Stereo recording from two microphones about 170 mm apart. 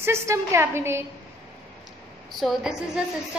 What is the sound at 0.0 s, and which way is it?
A woman's voice, 15° right (ahead or behind).